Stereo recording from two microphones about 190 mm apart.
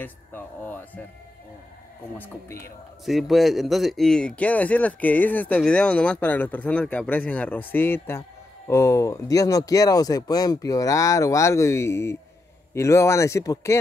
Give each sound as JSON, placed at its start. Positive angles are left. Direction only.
{"t": 0.0, "sound": "speech", "side_deg": 10}
{"t": 2.1, "sound": "speech", "side_deg": 10}
{"t": 3.1, "sound": "speech", "side_deg": 0}